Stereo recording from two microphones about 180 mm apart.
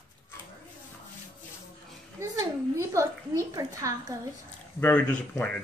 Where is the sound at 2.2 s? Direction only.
15° right (ahead or behind).